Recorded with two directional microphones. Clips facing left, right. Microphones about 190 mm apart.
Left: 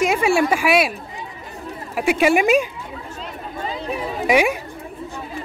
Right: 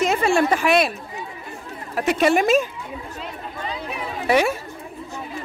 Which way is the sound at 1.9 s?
10° left (ahead or behind).